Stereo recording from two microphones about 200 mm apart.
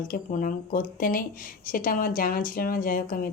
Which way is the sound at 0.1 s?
40° left (ahead or behind).